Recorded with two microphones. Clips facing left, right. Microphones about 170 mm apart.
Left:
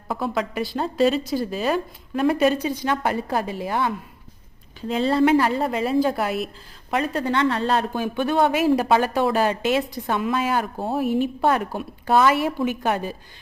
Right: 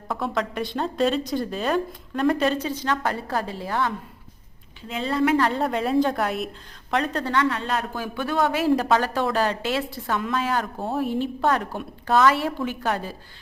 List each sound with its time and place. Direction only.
0.1 s a woman's voice: 5° left (ahead or behind)
4.9 s a woman's voice: 35° left (ahead or behind)
5.4 s a woman's voice: 5° left (ahead or behind)
7.3 s a woman's voice: 30° left (ahead or behind)
7.9 s speech: 20° left (ahead or behind)